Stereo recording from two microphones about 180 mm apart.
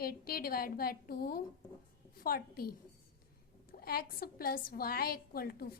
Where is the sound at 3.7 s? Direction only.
55° left (ahead or behind).